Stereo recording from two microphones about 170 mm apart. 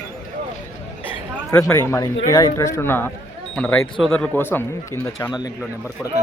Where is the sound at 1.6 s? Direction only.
20° left (ahead or behind).